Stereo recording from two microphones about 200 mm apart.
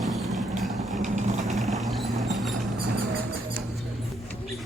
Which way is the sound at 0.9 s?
35° right (ahead or behind).